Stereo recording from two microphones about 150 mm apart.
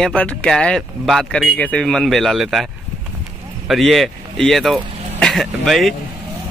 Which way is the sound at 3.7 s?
Centre (ahead or behind).